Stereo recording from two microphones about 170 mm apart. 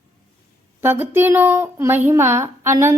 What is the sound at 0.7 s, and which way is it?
A woman's voice, 15° right (ahead or behind).